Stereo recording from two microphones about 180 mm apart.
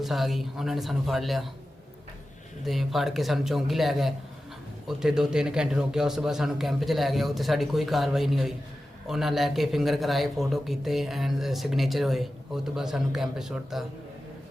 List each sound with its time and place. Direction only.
0.0 s a man's voice: centre (ahead or behind)
2.6 s a man's voice: centre (ahead or behind)